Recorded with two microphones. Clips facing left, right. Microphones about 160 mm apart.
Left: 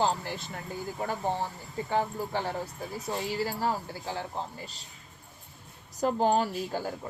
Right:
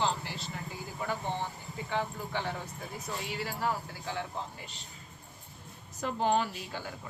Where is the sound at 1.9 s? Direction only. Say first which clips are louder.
Left 5 dB; 40° left (ahead or behind).